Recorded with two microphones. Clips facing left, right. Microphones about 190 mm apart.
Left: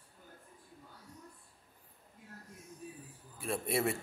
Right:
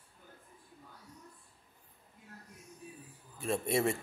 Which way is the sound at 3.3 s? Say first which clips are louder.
Right 3 dB; 5° left (ahead or behind).